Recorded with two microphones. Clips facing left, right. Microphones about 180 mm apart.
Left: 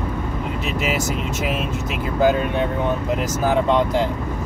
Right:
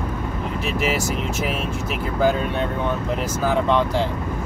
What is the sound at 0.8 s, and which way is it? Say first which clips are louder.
Speech: even; 20° left (ahead or behind).